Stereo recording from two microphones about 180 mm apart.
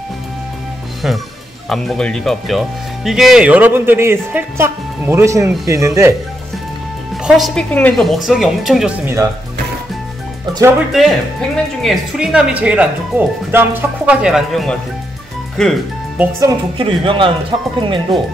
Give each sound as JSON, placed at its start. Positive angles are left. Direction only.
{"t": 1.0, "sound": "speech", "side_deg": -5}
{"t": 7.2, "sound": "speech", "side_deg": 0}
{"t": 10.9, "sound": "speech", "side_deg": 0}
{"t": 16.2, "sound": "speech", "side_deg": -15}
{"t": 16.7, "sound": "a man's voice", "side_deg": -30}